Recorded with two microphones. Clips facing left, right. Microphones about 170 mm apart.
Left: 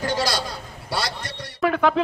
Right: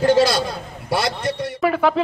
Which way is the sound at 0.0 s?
25° right (ahead or behind).